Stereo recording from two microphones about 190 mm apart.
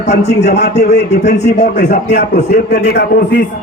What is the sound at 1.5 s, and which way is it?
A man's voice, 60° left (ahead or behind).